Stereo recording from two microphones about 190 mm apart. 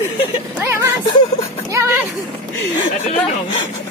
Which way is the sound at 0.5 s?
10° right (ahead or behind).